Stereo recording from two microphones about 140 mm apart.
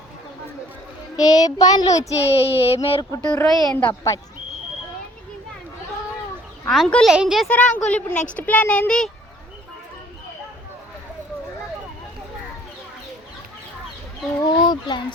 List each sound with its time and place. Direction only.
1.1 s child singing: 25° left (ahead or behind)
2.0 s a sound: 45° left (ahead or behind)
3.2 s a woman's voice: 5° left (ahead or behind)
6.7 s speech: 5° left (ahead or behind)
7.4 s a woman's voice: 10° left (ahead or behind)
14.4 s speech: 30° left (ahead or behind)